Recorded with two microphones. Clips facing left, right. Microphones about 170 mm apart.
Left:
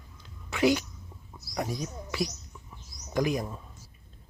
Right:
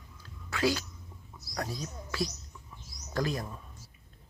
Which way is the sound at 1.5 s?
15° left (ahead or behind).